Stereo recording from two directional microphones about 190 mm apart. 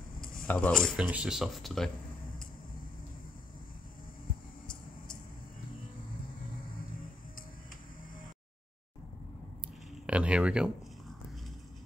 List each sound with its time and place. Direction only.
0.2 s a sound: 50° left (ahead or behind)
0.5 s speech: 5° left (ahead or behind)
10.0 s speech: 5° right (ahead or behind)